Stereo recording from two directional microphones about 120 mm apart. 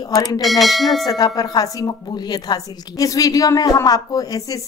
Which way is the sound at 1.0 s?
35° left (ahead or behind).